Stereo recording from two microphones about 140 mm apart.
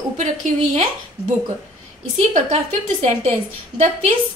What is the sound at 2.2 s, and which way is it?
Speech, 50° right (ahead or behind).